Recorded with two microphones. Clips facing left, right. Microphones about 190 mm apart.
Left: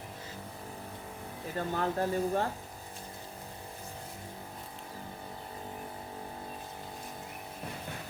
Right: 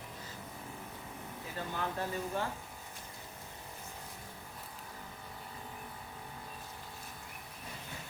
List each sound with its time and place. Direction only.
1.5 s speech: 45° left (ahead or behind)